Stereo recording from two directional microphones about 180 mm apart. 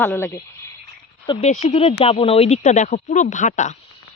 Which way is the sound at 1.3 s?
40° left (ahead or behind).